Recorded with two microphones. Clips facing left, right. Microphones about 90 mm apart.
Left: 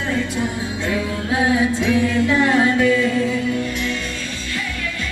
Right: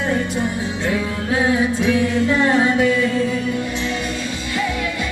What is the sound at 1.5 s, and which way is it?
Music, 25° right (ahead or behind).